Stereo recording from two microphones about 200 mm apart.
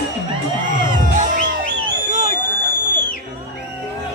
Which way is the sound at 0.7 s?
40° right (ahead or behind).